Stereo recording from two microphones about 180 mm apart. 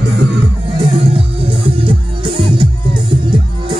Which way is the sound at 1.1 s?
30° right (ahead or behind).